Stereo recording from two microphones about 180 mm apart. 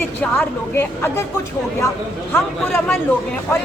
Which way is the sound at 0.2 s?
10° left (ahead or behind).